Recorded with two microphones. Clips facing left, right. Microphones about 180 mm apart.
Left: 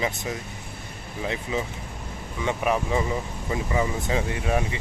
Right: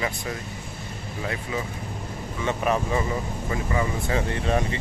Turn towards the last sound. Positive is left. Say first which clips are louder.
# right 1 dB
turn(degrees=10)  # may be behind; listen again after turning